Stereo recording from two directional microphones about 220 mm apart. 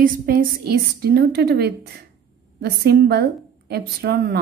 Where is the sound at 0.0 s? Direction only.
40° right (ahead or behind).